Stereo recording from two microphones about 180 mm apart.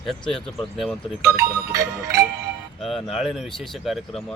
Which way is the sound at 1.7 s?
15° right (ahead or behind).